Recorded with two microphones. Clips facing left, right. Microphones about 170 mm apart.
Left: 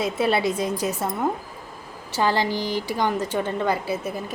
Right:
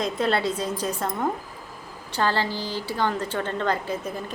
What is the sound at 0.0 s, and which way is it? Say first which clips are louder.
A woman's voice: left 2 dB; 10° left (ahead or behind).